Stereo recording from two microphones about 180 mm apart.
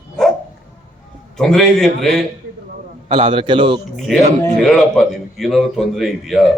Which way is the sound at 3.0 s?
30° right (ahead or behind).